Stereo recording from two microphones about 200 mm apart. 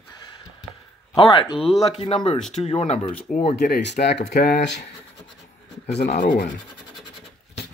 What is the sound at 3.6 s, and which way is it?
Speech, 55° left (ahead or behind).